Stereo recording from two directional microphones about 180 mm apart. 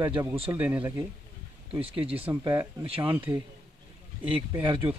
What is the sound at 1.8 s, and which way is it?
Speech, 30° right (ahead or behind).